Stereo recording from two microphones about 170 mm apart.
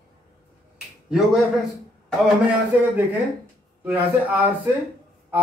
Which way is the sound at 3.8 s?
10° right (ahead or behind).